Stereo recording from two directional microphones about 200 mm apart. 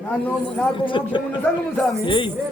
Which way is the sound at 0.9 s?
25° left (ahead or behind).